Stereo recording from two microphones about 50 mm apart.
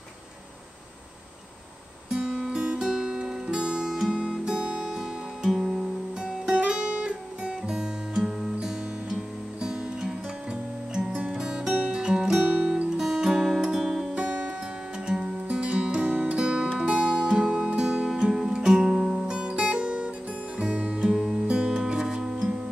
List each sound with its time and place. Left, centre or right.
2.0 s guitar: centre
2.9 s music: centre
16.1 s music: right
16.3 s music: right